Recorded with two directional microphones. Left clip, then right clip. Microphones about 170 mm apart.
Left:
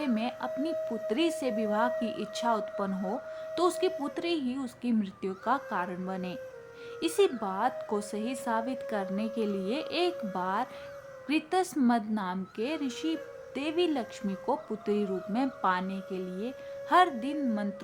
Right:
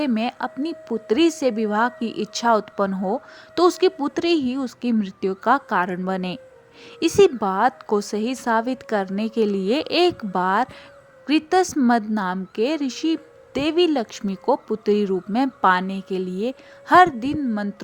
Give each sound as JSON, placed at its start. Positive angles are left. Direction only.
{"t": 0.0, "sound": "speech", "side_deg": -45}